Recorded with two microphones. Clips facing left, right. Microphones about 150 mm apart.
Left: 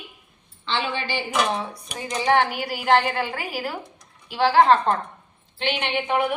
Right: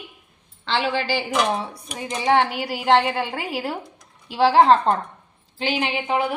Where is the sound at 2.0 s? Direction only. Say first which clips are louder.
Right 1 dB; 25° right (ahead or behind).